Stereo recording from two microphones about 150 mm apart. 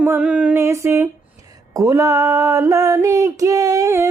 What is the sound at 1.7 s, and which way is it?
Female singing, 20° right (ahead or behind).